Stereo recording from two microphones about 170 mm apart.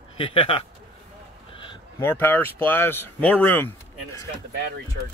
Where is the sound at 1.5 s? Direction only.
30° left (ahead or behind).